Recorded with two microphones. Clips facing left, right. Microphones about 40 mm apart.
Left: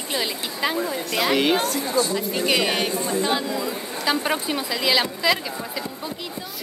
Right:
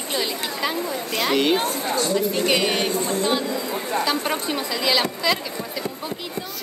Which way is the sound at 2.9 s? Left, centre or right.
Right.